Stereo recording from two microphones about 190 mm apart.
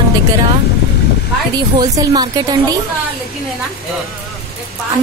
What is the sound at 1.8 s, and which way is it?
Speech, 20° right (ahead or behind).